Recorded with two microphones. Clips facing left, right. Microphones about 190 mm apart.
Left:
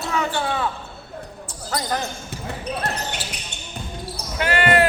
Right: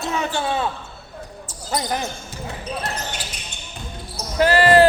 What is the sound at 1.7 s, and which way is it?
Speech, 15° right (ahead or behind).